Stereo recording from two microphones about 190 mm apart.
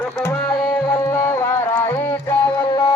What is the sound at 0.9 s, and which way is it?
Music, 15° left (ahead or behind).